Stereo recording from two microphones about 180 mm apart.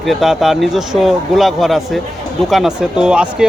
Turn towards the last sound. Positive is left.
turn(degrees=-5)  # may be behind; listen again after turning